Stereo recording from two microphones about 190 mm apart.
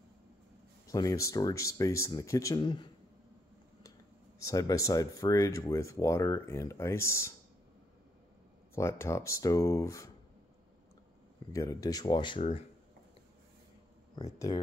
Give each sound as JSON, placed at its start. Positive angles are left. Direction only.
{"t": 0.8, "sound": "speech", "side_deg": 15}
{"t": 4.4, "sound": "speech", "side_deg": 20}
{"t": 8.7, "sound": "speech", "side_deg": 15}
{"t": 11.5, "sound": "speech", "side_deg": 20}
{"t": 14.2, "sound": "speech", "side_deg": 20}